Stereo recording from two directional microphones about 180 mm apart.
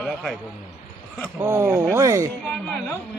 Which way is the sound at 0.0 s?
Centre (ahead or behind).